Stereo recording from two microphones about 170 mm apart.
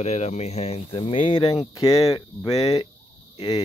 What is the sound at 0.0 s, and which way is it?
Speech, 40° left (ahead or behind).